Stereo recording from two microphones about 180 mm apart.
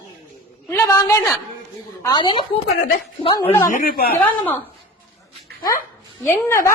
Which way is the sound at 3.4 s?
15° left (ahead or behind).